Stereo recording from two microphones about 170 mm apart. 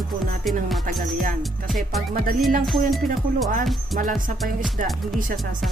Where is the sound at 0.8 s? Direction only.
55° right (ahead or behind).